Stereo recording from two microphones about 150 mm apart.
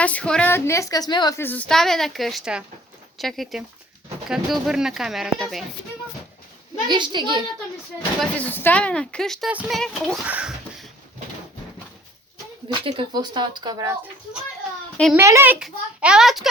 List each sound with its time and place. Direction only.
0.0 s a woman's voice: 10° left (ahead or behind); by 1.4 s 25° left (ahead or behind)
1.4 s speech: 10° left (ahead or behind)
6.8 s a child's voice: 30° right (ahead or behind)
8.2 s speech: 10° left (ahead or behind)
9.5 s speech: 10° right (ahead or behind)
9.7 s speech: 5° left (ahead or behind)
10.2 s a sound: 5° right (ahead or behind)
12.6 s speech: 35° right (ahead or behind)
15.1 s speech: 15° right (ahead or behind); by 16.5 s centre (ahead or behind)